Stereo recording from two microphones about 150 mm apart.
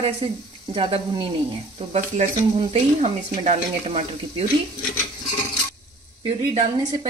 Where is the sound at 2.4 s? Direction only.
45° right (ahead or behind).